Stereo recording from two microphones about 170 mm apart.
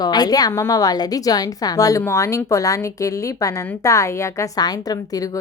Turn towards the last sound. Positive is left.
turn(degrees=20)  # may be behind; listen again after turning